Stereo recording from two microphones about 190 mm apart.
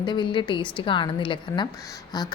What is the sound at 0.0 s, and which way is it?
A woman's voice, 25° left (ahead or behind).